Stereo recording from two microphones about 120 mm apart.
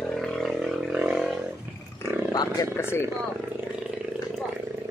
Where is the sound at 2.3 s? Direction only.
30° left (ahead or behind).